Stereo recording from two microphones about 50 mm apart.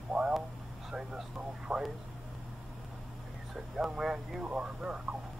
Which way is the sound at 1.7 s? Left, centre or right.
Centre.